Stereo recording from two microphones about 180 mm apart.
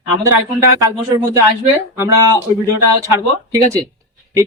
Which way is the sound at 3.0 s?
15° right (ahead or behind).